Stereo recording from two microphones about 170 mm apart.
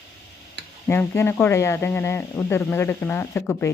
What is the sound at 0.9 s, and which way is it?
Speech, 15° left (ahead or behind).